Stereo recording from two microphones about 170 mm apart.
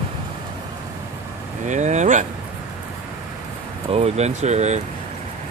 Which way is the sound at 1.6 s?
45° right (ahead or behind).